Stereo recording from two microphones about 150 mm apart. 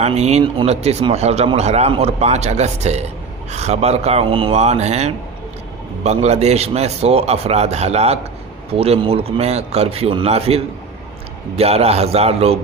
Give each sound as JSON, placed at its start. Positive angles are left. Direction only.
{"t": 0.0, "sound": "speech", "side_deg": -45}